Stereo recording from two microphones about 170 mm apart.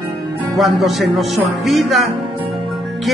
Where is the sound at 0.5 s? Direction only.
Centre (ahead or behind).